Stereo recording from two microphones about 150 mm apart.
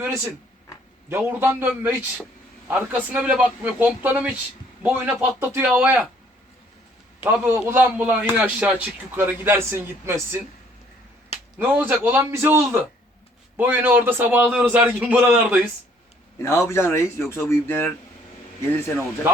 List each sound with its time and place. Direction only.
1.1 s speech: 15° right (ahead or behind)
7.3 s speech: 10° right (ahead or behind)
11.5 s speech: 10° right (ahead or behind)
16.4 s speech: 20° left (ahead or behind)